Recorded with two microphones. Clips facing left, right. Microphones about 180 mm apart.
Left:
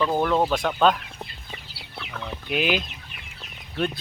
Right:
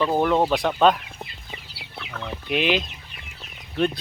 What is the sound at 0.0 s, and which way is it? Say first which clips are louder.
Speech: right 2 dB; 5° right (ahead or behind).